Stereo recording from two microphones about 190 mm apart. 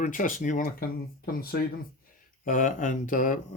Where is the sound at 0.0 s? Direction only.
45° left (ahead or behind).